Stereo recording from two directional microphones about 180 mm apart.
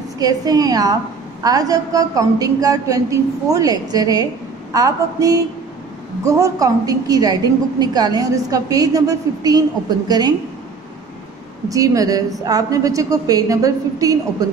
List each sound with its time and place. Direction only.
0.2 s a woman's voice: 20° right (ahead or behind)
11.7 s a woman's voice: 20° right (ahead or behind)